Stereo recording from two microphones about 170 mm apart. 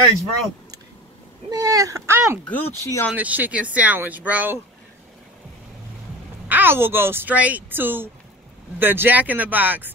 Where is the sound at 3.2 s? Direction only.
10° right (ahead or behind).